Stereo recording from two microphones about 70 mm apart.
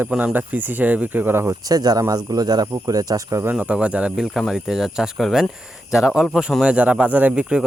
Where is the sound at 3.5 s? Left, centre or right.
Centre.